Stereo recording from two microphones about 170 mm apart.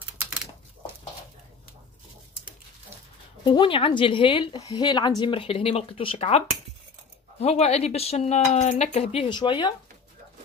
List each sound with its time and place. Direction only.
3.4 s a woman's voice: 30° left (ahead or behind)